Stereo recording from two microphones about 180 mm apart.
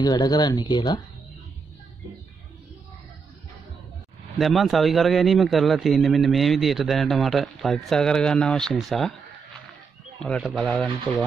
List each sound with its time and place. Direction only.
0.0 s speech: 20° left (ahead or behind)
4.4 s a man's voice: centre (ahead or behind)
10.2 s a man's voice: centre (ahead or behind)